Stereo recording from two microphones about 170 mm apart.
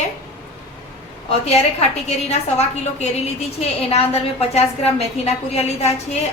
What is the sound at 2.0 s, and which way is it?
A woman's voice, 40° left (ahead or behind).